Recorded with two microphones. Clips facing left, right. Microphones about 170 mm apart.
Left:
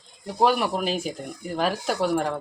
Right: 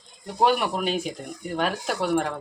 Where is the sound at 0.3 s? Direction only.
Centre (ahead or behind).